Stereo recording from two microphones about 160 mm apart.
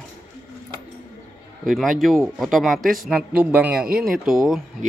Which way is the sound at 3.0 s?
5° right (ahead or behind).